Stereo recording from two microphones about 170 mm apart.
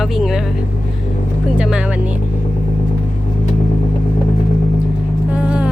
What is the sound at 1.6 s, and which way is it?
Speech, 5° right (ahead or behind).